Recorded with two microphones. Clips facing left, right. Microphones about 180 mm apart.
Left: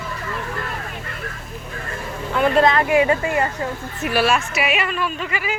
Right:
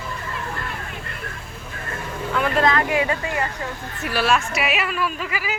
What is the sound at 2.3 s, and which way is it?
Speech, 25° left (ahead or behind).